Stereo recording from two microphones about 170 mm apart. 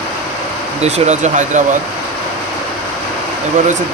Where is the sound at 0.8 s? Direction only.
40° right (ahead or behind).